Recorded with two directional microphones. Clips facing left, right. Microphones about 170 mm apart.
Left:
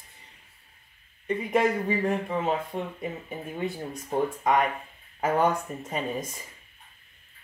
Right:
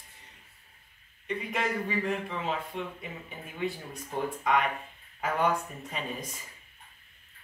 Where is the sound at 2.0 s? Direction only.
45° left (ahead or behind).